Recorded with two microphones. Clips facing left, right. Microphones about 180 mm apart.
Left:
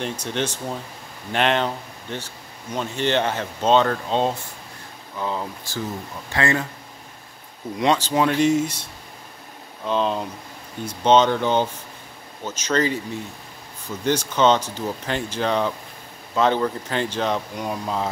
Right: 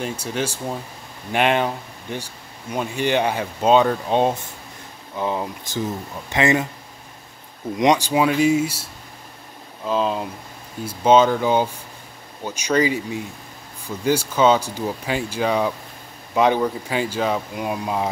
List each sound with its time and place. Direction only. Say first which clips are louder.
0.0 s speech: right 1 dB; 5° right (ahead or behind)
7.7 s speech: right 3 dB; 15° right (ahead or behind)
9.8 s speech: right 1 dB; 5° right (ahead or behind)